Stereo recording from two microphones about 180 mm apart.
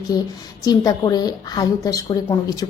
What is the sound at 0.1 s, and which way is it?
A woman's voice, 20° left (ahead or behind).